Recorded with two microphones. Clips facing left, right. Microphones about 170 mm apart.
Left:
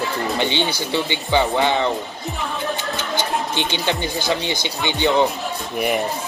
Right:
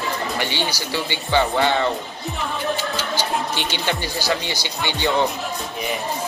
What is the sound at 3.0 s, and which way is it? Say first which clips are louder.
Speech: left 1 dB; 20° left (ahead or behind).